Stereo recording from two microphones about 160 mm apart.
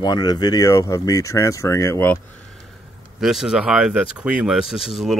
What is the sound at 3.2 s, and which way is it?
Speech, centre (ahead or behind).